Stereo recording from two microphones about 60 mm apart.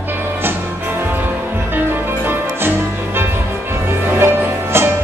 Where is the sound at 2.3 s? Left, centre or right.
Right.